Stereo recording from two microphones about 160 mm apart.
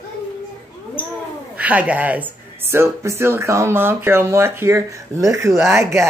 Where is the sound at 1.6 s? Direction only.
10° right (ahead or behind).